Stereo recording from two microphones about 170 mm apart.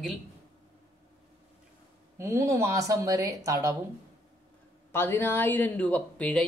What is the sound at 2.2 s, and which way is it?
Speech, 15° right (ahead or behind).